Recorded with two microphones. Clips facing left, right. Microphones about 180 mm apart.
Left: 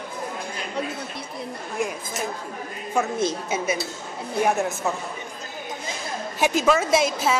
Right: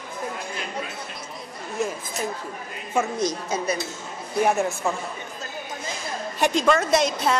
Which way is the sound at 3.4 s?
5° left (ahead or behind).